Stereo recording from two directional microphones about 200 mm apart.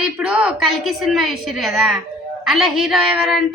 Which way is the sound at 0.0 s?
5° right (ahead or behind).